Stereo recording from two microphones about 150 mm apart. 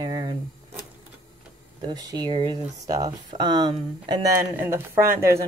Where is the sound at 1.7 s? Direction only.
30° right (ahead or behind).